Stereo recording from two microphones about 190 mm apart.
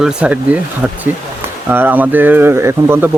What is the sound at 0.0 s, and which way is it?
Speech, 5° right (ahead or behind).